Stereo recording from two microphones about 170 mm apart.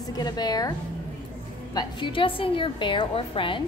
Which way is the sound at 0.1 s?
25° left (ahead or behind).